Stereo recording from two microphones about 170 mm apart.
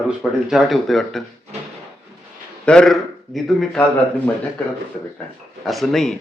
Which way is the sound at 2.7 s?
5° left (ahead or behind).